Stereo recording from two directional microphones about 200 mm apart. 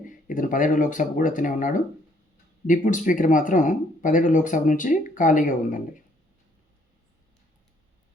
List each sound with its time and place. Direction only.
0.0 s speech: 40° left (ahead or behind)